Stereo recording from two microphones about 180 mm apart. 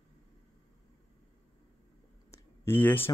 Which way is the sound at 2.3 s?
10° left (ahead or behind).